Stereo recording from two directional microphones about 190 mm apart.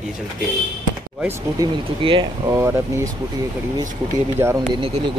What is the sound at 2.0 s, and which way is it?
Speech, 25° right (ahead or behind).